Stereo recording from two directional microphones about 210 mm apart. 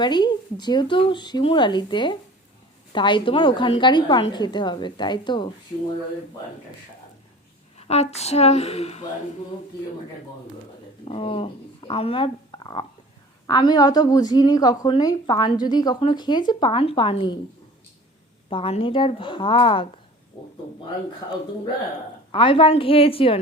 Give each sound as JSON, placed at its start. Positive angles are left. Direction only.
{"t": 0.0, "sound": "a woman's voice", "side_deg": 20}
{"t": 7.8, "sound": "a woman's voice", "side_deg": 30}
{"t": 11.0, "sound": "a woman's voice", "side_deg": 25}
{"t": 18.4, "sound": "a woman's voice", "side_deg": 25}
{"t": 22.3, "sound": "a woman's voice", "side_deg": 25}